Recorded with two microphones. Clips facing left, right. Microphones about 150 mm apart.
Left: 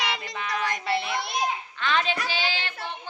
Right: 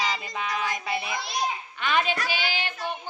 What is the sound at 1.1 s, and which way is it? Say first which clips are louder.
Speech: left 2 dB; 60° left (ahead or behind).